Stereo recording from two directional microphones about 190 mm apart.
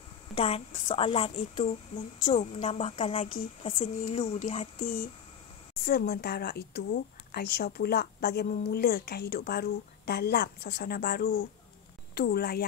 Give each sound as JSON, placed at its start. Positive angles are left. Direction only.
{"t": 0.3, "sound": "a woman's voice", "side_deg": 30}
{"t": 5.9, "sound": "a woman's voice", "side_deg": 55}